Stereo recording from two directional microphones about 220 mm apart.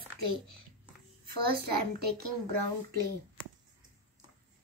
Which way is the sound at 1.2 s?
45° right (ahead or behind).